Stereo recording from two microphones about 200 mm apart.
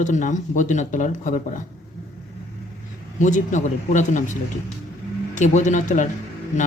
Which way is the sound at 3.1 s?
40° left (ahead or behind).